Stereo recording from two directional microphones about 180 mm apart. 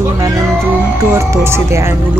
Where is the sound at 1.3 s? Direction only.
15° right (ahead or behind).